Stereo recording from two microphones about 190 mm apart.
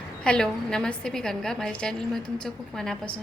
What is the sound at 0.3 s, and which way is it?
A woman's voice, 5° left (ahead or behind).